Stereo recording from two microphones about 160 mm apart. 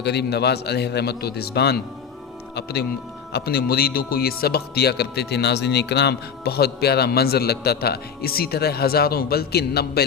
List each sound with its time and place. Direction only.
0.0 s a man's voice: 90° left
3.3 s speech: 80° left